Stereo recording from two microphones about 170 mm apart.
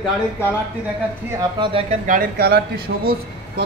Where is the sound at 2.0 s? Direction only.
50° right (ahead or behind).